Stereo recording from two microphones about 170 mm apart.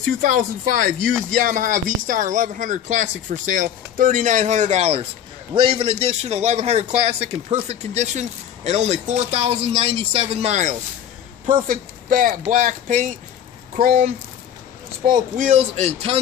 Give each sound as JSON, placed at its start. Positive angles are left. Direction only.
{"t": 0.0, "sound": "a man's voice", "side_deg": -55}
{"t": 11.6, "sound": "speech", "side_deg": -55}
{"t": 13.7, "sound": "speech", "side_deg": -60}
{"t": 15.3, "sound": "a man's voice", "side_deg": -45}